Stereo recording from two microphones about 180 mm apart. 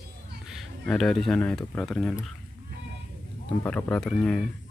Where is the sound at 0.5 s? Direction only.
Centre (ahead or behind).